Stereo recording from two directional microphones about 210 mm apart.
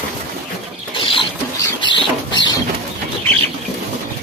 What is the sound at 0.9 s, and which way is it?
Rodents, 25° left (ahead or behind).